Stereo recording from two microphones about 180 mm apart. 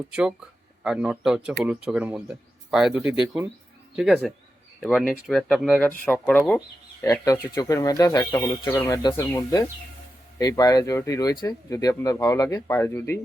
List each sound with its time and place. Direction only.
0.1 s speech: 5° right (ahead or behind)
3.9 s speech: centre (ahead or behind)
7.0 s speech: 20° left (ahead or behind)